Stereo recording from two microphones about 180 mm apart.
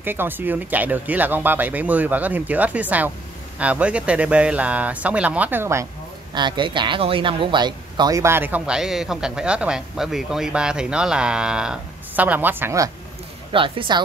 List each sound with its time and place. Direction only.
0.0 s speech: 10° right (ahead or behind)
6.3 s speech: 25° right (ahead or behind)
13.5 s speech: 30° right (ahead or behind)